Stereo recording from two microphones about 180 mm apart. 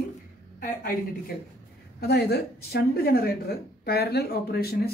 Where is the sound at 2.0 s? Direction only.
65° left (ahead or behind).